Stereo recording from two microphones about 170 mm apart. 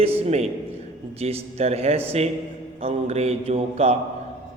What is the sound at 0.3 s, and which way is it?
A man's voice, 40° right (ahead or behind).